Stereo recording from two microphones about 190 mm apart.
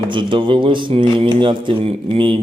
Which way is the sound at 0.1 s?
25° right (ahead or behind).